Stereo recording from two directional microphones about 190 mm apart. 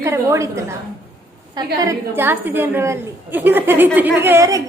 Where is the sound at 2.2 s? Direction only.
10° right (ahead or behind).